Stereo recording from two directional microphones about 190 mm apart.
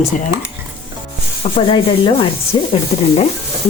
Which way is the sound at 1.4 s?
30° left (ahead or behind).